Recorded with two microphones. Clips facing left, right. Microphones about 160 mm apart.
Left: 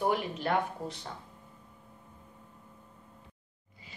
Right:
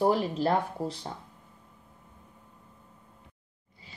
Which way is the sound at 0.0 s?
35° right (ahead or behind).